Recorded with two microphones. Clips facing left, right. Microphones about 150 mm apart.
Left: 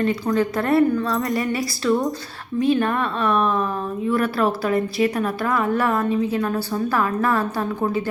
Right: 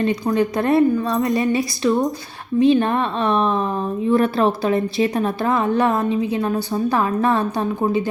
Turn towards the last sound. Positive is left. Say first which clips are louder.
# right 3 dB
turn(degrees=-20)  # may be behind; listen again after turning